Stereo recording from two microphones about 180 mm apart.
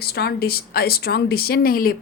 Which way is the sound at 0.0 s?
60° left (ahead or behind).